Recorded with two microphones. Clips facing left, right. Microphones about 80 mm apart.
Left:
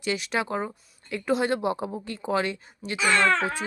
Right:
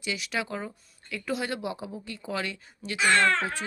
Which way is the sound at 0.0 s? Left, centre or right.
Left.